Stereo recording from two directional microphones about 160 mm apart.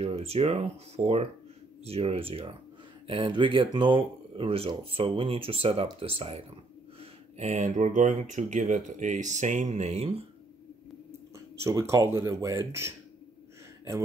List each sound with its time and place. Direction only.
0.0 s speech: 40° right (ahead or behind)
11.1 s speech: 15° right (ahead or behind)